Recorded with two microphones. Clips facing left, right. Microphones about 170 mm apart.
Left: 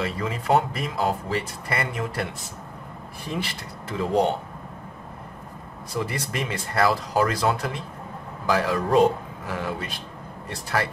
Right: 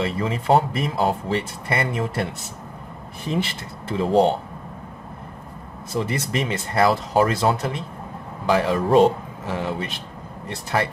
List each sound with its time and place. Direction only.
0.0 s speech: 30° right (ahead or behind)
3.9 s speech: 30° right (ahead or behind)
5.9 s speech: 25° right (ahead or behind)